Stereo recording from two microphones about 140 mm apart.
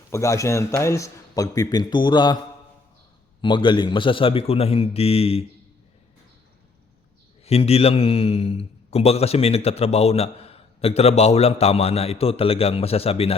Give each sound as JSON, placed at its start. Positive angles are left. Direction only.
{"t": 0.1, "sound": "a man's voice", "side_deg": 20}
{"t": 3.4, "sound": "a man's voice", "side_deg": 35}
{"t": 7.4, "sound": "a man's voice", "side_deg": 45}